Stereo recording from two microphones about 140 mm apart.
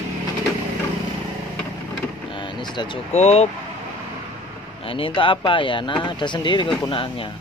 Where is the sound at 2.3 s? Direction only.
35° left (ahead or behind).